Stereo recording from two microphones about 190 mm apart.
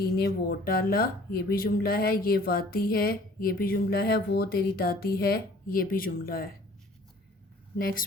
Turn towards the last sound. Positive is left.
turn(degrees=50)  # may be behind; listen again after turning